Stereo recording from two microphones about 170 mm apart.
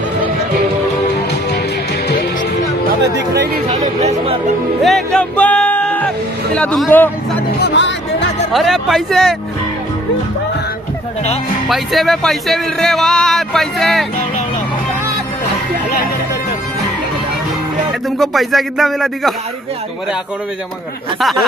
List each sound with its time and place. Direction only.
3.7 s speech: 40° right (ahead or behind)
4.8 s speech: 5° left (ahead or behind)
7.5 s music: 85° left
8.5 s speech: centre (ahead or behind)
11.7 s speech: centre (ahead or behind)
18.2 s speech: centre (ahead or behind)
21.2 s speech: centre (ahead or behind)